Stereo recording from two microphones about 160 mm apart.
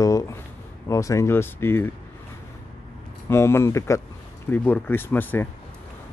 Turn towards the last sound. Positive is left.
turn(degrees=10)  # may be behind; listen again after turning